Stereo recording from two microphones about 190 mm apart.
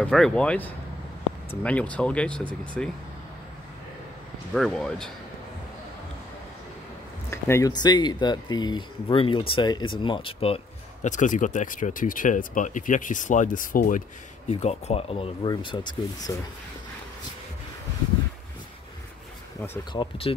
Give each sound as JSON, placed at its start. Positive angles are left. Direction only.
{"t": 0.0, "sound": "speech", "side_deg": 5}
{"t": 4.6, "sound": "speech", "side_deg": 5}
{"t": 7.2, "sound": "speech", "side_deg": 15}
{"t": 11.1, "sound": "speech", "side_deg": 40}
{"t": 19.8, "sound": "speech", "side_deg": 25}